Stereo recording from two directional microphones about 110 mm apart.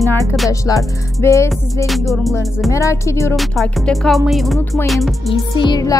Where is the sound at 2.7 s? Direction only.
30° left (ahead or behind).